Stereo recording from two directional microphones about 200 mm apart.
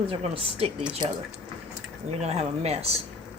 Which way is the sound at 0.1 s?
30° right (ahead or behind).